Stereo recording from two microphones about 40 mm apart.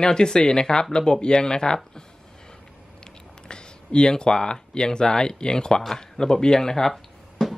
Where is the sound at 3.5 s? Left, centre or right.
Left.